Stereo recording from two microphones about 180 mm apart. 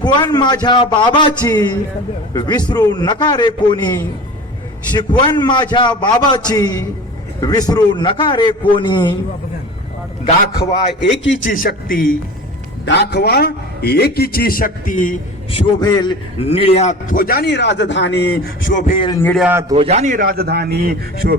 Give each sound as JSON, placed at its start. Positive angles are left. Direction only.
{"t": 0.0, "sound": "a man's voice", "side_deg": 25}
{"t": 10.2, "sound": "a man's voice", "side_deg": 35}
{"t": 11.0, "sound": "a man's voice", "side_deg": 90}
{"t": 11.4, "sound": "a man's voice", "side_deg": 50}
{"t": 12.8, "sound": "a man's voice", "side_deg": 75}
{"t": 15.5, "sound": "a man's voice", "side_deg": 25}
{"t": 18.9, "sound": "a man's voice", "side_deg": 25}
{"t": 19.4, "sound": "a man's voice", "side_deg": -10}
{"t": 19.7, "sound": "a man's voice", "side_deg": -35}